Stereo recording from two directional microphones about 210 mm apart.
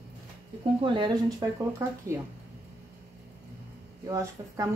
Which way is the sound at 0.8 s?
25° right (ahead or behind).